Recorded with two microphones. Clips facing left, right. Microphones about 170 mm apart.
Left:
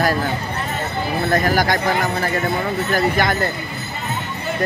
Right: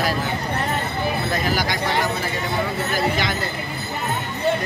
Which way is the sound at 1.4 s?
50° left (ahead or behind).